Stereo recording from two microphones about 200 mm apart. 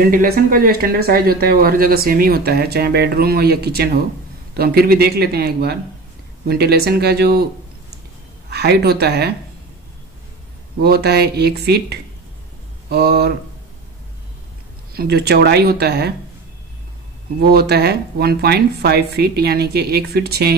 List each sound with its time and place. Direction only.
0.0 s speech: 45° right (ahead or behind)
8.5 s speech: 55° right (ahead or behind)
10.8 s speech: 55° right (ahead or behind)
15.0 s speech: 55° right (ahead or behind)
17.4 s speech: 50° right (ahead or behind)